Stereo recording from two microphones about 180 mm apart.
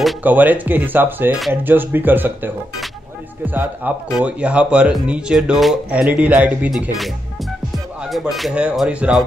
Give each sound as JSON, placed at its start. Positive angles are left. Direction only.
{"t": 0.0, "sound": "speech", "side_deg": -10}
{"t": 8.0, "sound": "speech", "side_deg": 0}